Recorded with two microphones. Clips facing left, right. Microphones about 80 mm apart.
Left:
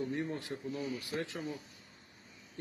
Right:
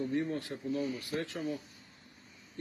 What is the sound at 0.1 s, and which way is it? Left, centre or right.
Speech, centre.